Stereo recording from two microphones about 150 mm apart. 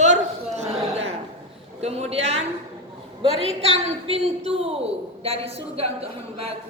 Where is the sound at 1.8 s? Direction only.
45° right (ahead or behind).